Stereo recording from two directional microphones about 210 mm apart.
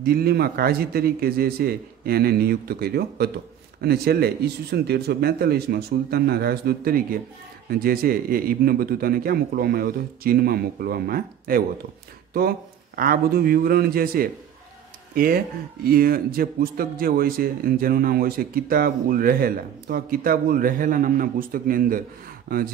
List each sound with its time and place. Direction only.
0.0 s speech: 50° right (ahead or behind)